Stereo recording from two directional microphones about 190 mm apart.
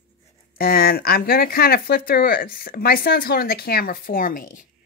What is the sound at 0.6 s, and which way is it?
Speech, 50° left (ahead or behind).